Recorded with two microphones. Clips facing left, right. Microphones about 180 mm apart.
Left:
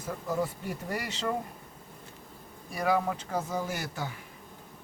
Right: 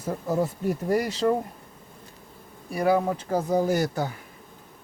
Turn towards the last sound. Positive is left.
turn(degrees=-40)  # may be behind; listen again after turning